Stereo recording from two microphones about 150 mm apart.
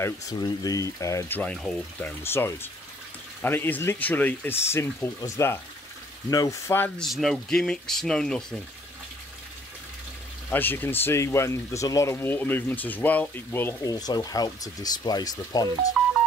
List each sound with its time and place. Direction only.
0.0 s speech: 25° left (ahead or behind)
1.4 s speech: 5° left (ahead or behind); by 6.8 s 25° left (ahead or behind)
6.8 s speech: centre (ahead or behind)
10.5 s speech: 15° left (ahead or behind)
13.9 s speech: 25° left (ahead or behind)
16.0 s music: centre (ahead or behind)